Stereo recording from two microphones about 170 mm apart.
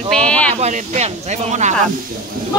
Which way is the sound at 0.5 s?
40° right (ahead or behind).